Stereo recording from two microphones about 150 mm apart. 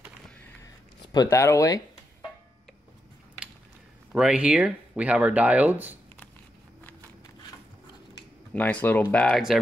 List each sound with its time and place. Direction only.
1.1 s speech: 25° left (ahead or behind)
4.1 s speech: 5° right (ahead or behind)
8.5 s speech: 10° left (ahead or behind)